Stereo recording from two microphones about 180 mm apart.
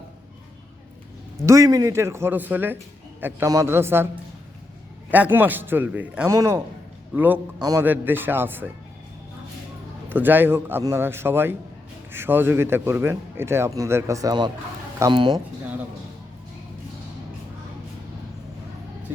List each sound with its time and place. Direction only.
1.5 s speech: 20° right (ahead or behind)
10.1 s speech: 10° right (ahead or behind); by 15.4 s 25° right (ahead or behind)